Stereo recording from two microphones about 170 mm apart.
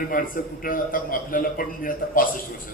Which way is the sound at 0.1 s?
55° left (ahead or behind).